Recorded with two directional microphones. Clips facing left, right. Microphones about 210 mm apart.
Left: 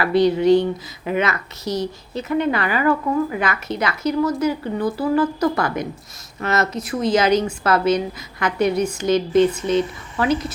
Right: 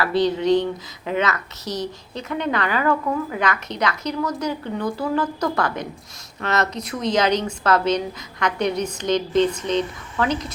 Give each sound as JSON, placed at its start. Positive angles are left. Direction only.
{"t": 0.0, "sound": "a woman's voice", "side_deg": 10}